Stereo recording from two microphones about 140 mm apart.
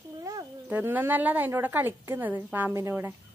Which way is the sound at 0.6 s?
10° right (ahead or behind).